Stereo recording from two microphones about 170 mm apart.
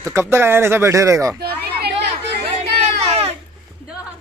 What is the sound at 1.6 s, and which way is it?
Chatter, 70° right (ahead or behind).